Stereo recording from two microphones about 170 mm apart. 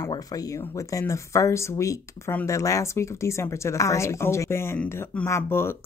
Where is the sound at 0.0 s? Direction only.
20° left (ahead or behind).